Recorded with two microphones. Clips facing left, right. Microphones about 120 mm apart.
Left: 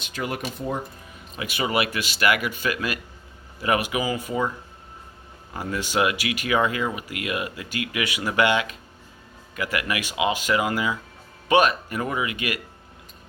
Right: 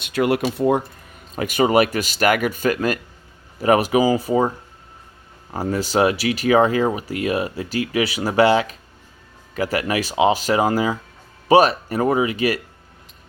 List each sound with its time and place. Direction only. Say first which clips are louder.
0.0 s speech: right 10 dB; 75° right (ahead or behind)
1.4 s speech: right 8 dB; 45° right (ahead or behind)
5.5 s speech: right 5 dB; 35° right (ahead or behind)